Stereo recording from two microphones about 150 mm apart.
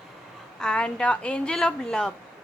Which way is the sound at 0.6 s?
5° left (ahead or behind).